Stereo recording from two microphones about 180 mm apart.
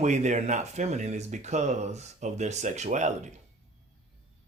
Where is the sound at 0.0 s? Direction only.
40° right (ahead or behind).